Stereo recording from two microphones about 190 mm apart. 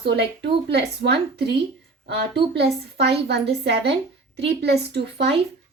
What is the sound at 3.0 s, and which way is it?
A woman's voice, 60° right (ahead or behind).